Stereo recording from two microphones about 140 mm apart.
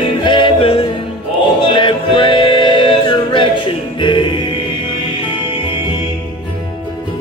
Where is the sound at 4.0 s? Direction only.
35° left (ahead or behind).